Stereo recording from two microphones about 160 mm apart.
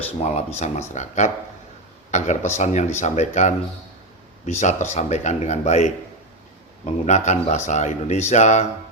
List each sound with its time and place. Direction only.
0.2 s a man's voice: 45° left (ahead or behind)
6.8 s a man's voice: 45° left (ahead or behind)